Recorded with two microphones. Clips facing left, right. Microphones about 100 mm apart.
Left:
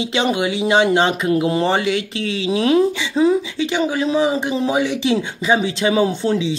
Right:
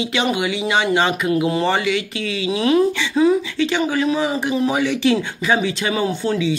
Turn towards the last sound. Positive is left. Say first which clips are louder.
# left 1 dB
turn(degrees=25)  # may be behind; listen again after turning